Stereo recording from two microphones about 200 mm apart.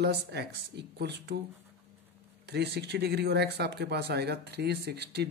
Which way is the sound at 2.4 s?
55° right (ahead or behind).